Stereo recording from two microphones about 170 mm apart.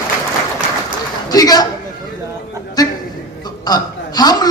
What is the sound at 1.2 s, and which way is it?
Speech, 20° left (ahead or behind).